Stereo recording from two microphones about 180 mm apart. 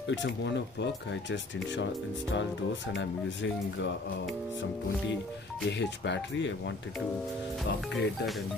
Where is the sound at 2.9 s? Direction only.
75° left (ahead or behind).